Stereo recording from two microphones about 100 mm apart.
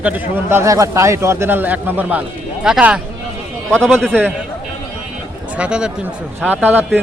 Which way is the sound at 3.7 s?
10° left (ahead or behind).